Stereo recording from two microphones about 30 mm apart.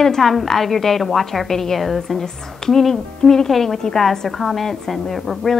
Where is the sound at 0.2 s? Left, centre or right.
Centre.